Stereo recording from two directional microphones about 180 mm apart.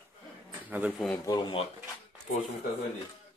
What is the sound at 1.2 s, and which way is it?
Speech, 25° left (ahead or behind).